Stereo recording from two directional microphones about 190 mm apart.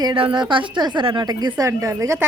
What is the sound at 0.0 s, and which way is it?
A woman's voice, 25° right (ahead or behind).